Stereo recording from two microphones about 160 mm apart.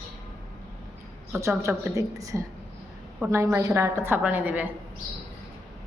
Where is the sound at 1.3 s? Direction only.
15° right (ahead or behind).